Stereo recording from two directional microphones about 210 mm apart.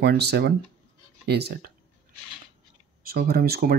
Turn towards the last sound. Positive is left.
turn(degrees=-45)  # may be behind; listen again after turning